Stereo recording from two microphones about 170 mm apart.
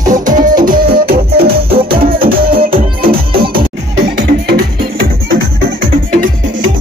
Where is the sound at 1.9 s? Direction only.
60° right (ahead or behind).